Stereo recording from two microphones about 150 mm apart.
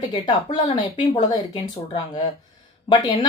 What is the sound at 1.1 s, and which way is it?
Speech, 30° left (ahead or behind).